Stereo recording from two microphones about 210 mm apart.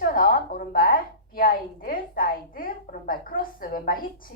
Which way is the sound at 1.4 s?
40° left (ahead or behind).